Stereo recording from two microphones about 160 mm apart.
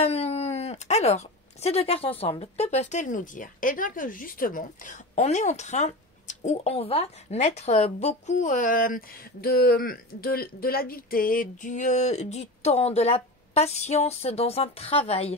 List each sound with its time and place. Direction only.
0.0 s speech: 40° left (ahead or behind)